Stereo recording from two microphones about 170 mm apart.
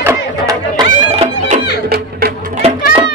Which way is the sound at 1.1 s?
35° right (ahead or behind).